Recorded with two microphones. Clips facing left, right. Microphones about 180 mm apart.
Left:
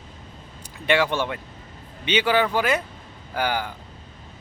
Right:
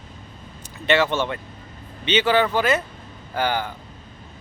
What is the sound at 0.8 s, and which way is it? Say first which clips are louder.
Speech: right 1 dB; 10° left (ahead or behind).